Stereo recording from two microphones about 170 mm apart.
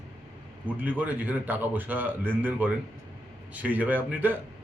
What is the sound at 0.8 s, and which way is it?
A man's voice, 10° right (ahead or behind).